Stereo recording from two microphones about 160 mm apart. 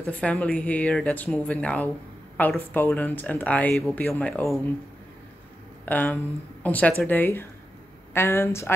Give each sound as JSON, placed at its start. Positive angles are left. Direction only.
{"t": 0.0, "sound": "speech", "side_deg": 5}
{"t": 5.9, "sound": "a woman's voice", "side_deg": 10}